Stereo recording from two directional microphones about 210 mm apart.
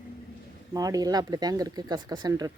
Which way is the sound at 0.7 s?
15° right (ahead or behind).